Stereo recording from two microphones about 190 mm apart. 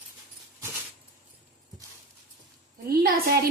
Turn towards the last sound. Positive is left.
turn(degrees=-50)  # may be behind; listen again after turning